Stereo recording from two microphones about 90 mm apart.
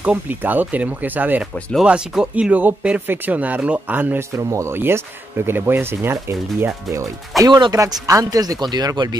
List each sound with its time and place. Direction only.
0.0 s speech: 15° right (ahead or behind)
1.8 s speech: 5° right (ahead or behind)
4.4 s speech: 35° right (ahead or behind)
7.3 s speech: centre (ahead or behind)
7.7 s speech: 35° right (ahead or behind)